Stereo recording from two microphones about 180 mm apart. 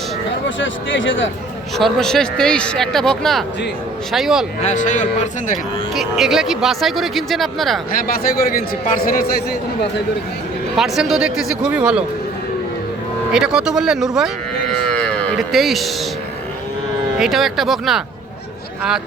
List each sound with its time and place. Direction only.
0.4 s speech: 90° left
1.8 s speech: 5° left (ahead or behind)
4.6 s speech: 45° left (ahead or behind)
5.9 s speech: centre (ahead or behind)
8.0 s a man's voice: 55° left (ahead or behind)
10.8 s speech: centre (ahead or behind)
13.3 s speech: 5° right (ahead or behind)
14.9 s moo: 5° left (ahead or behind)
17.2 s speech: centre (ahead or behind)